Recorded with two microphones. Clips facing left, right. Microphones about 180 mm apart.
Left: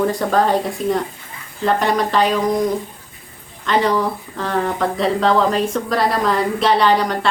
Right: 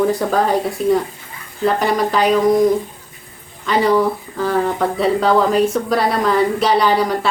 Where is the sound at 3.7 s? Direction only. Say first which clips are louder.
Right 2 dB; 5° right (ahead or behind).